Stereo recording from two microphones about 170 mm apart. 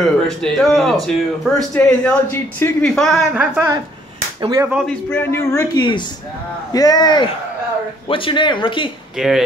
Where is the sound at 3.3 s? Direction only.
10° right (ahead or behind).